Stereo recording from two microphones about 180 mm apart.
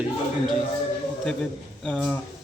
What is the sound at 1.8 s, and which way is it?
Speech, 5° left (ahead or behind).